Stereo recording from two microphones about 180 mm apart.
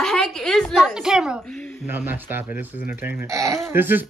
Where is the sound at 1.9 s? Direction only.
10° right (ahead or behind).